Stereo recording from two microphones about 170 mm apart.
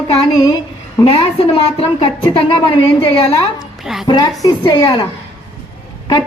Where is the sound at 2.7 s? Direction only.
30° left (ahead or behind).